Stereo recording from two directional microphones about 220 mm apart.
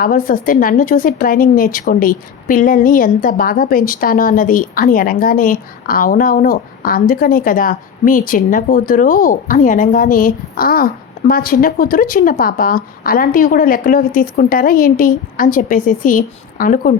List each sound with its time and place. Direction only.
0.0 s a woman's voice: 40° left (ahead or behind)